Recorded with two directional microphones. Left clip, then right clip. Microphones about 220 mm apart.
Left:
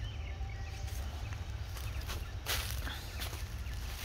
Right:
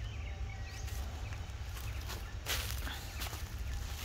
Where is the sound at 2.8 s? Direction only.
Centre (ahead or behind).